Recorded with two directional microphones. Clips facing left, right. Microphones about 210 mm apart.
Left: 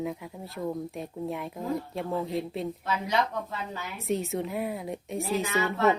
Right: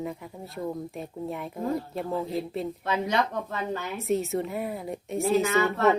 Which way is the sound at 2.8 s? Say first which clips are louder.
Right 2 dB; 50° right (ahead or behind).